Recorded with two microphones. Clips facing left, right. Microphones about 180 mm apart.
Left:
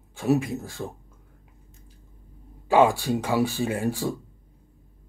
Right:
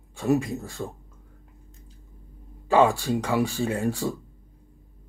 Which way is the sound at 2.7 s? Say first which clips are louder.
Left 1 dB; 15° left (ahead or behind).